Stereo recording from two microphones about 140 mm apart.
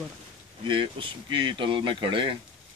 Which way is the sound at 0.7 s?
35° right (ahead or behind).